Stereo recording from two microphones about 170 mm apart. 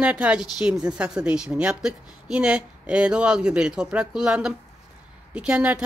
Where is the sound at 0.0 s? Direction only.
5° right (ahead or behind).